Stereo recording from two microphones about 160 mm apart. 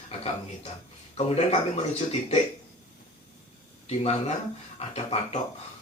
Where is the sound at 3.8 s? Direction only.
40° left (ahead or behind).